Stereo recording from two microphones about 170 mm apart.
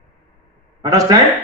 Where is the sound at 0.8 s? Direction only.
20° right (ahead or behind).